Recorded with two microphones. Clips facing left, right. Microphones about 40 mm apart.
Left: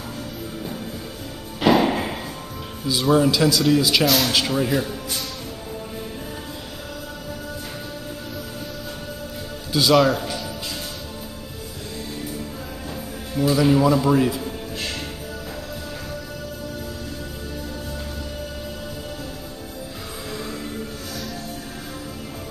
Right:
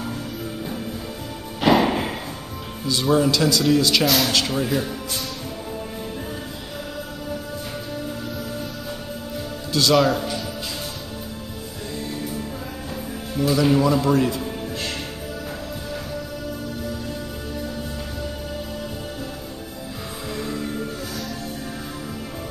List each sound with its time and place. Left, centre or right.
1.6 s music: centre
2.9 s speech: centre
9.7 s speech: centre
13.3 s speech: centre
20.3 s music: centre